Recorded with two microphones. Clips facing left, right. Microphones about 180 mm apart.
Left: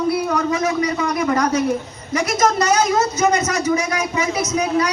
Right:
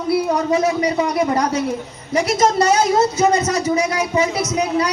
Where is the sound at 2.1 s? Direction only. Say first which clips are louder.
Right 2 dB; 30° right (ahead or behind).